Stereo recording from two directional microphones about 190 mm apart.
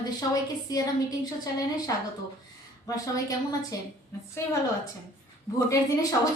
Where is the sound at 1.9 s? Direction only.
20° left (ahead or behind).